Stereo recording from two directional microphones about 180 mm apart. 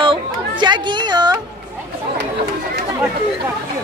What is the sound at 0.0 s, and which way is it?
Chatter, 25° right (ahead or behind).